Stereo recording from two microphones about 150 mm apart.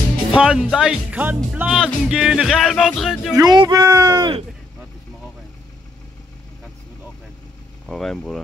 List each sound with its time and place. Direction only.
0.4 s speech: 5° right (ahead or behind)
3.3 s speech: 30° right (ahead or behind)
7.9 s speech: 5° left (ahead or behind)